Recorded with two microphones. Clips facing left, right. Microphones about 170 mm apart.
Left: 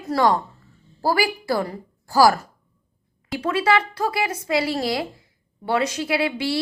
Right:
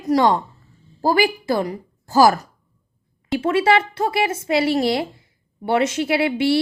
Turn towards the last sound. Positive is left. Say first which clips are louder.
# right 5 dB
turn(degrees=-25)  # may be behind; listen again after turning